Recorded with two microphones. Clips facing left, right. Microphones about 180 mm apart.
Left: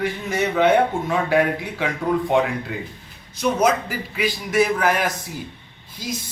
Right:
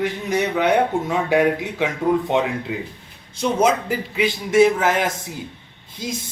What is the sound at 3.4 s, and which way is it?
Speech, 25° right (ahead or behind).